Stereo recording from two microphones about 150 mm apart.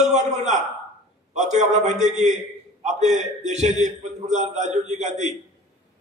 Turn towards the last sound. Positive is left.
turn(degrees=-50)  # may be behind; listen again after turning